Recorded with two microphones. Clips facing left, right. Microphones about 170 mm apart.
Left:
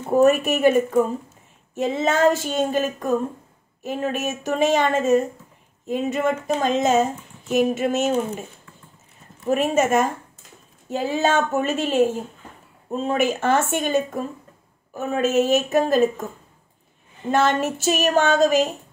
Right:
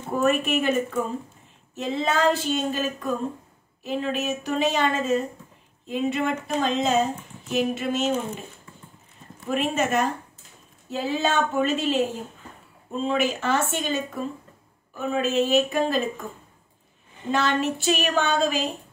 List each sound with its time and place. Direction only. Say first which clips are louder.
0.1 s a woman's voice: left 6 dB; 40° left (ahead or behind)
9.5 s a woman's voice: left 5 dB; 45° left (ahead or behind)
17.3 s a woman's voice: left 4 dB; 50° left (ahead or behind)